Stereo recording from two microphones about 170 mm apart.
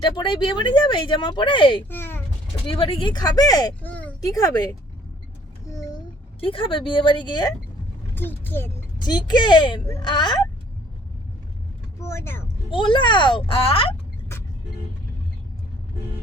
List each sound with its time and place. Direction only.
0.0 s speech: 30° left (ahead or behind)
1.9 s a child's voice: 10° left (ahead or behind)
2.6 s speech: 30° left (ahead or behind)
3.8 s a sound: 10° left (ahead or behind)
4.2 s speech: 20° left (ahead or behind)
5.7 s a sound: 20° left (ahead or behind)
6.4 s speech: 30° left (ahead or behind)
8.1 s speech: 10° left (ahead or behind)
9.0 s speech: 25° left (ahead or behind)
11.9 s speech: 15° left (ahead or behind)
12.7 s speech: 30° left (ahead or behind)